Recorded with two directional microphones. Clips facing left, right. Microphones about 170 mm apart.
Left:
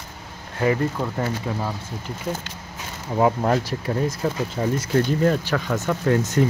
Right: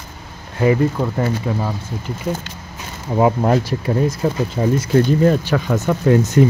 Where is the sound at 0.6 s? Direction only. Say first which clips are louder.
Right 6 dB; 10° right (ahead or behind).